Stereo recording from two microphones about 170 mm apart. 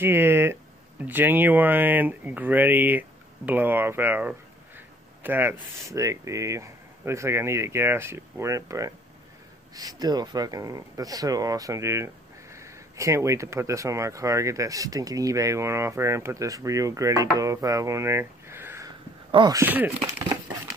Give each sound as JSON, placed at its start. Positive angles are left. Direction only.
{"t": 0.0, "sound": "speech", "side_deg": -15}
{"t": 19.3, "sound": "speech", "side_deg": -25}
{"t": 19.6, "sound": "speech", "side_deg": -10}